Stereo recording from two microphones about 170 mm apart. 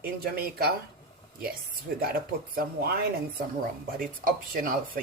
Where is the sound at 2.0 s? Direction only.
60° right (ahead or behind).